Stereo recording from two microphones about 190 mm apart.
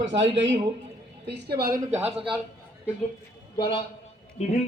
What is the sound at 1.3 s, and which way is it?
Speech, 60° right (ahead or behind).